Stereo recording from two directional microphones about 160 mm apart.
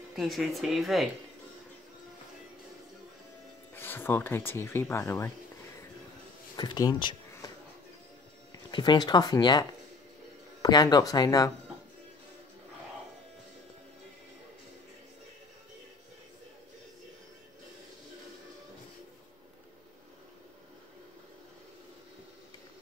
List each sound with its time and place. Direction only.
0.1 s speech: centre (ahead or behind)
3.7 s speech: 15° left (ahead or behind)
6.5 s a sound: 25° left (ahead or behind)
8.5 s speech: 25° left (ahead or behind)